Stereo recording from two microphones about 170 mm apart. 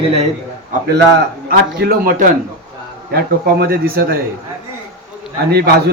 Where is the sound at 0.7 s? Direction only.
75° right (ahead or behind).